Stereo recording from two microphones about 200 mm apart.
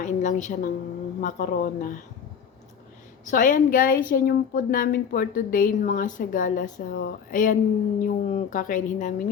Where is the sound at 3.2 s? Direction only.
40° left (ahead or behind).